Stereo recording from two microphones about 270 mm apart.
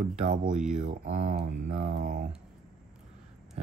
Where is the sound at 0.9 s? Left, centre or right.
Right.